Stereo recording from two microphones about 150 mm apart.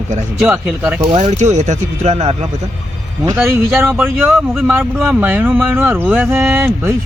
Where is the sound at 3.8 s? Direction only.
15° right (ahead or behind).